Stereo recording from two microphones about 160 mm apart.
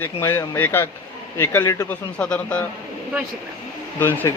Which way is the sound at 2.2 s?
10° left (ahead or behind).